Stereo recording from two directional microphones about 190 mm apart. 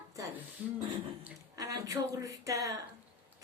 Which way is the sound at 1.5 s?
20° right (ahead or behind).